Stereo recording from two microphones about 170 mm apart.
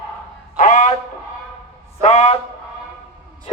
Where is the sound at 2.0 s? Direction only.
40° left (ahead or behind).